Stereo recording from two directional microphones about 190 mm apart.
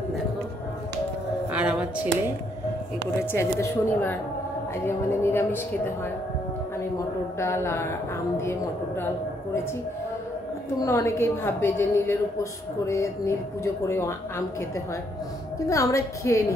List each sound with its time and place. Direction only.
1.5 s a sound: 5° right (ahead or behind)
3.2 s a woman's voice: 15° left (ahead or behind)
7.3 s a woman's voice: 15° left (ahead or behind)
10.9 s a woman's voice: 15° left (ahead or behind)
15.7 s a woman's voice: 15° left (ahead or behind)